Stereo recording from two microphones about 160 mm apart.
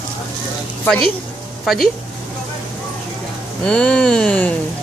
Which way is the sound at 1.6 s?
Centre (ahead or behind).